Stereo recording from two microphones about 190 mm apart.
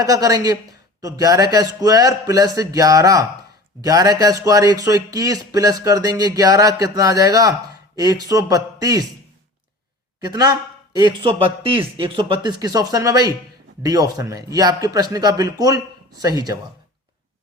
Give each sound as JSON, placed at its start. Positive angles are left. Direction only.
{"t": 0.0, "sound": "speech", "side_deg": -20}
{"t": 10.2, "sound": "a man's voice", "side_deg": -20}